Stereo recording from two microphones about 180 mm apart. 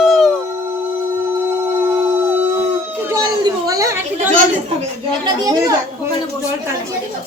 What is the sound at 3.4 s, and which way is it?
Chatter, 20° right (ahead or behind).